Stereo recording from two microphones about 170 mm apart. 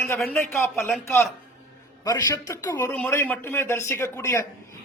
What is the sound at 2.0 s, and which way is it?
Speech, 20° left (ahead or behind).